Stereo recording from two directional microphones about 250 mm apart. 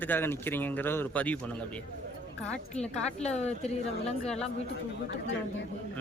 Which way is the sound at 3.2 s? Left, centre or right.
Left.